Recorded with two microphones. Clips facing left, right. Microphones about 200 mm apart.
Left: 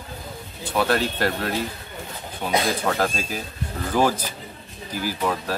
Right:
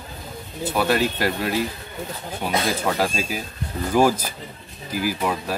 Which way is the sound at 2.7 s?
10° right (ahead or behind).